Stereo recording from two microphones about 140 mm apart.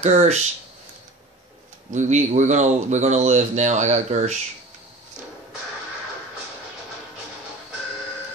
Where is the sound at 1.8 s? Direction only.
60° right (ahead or behind).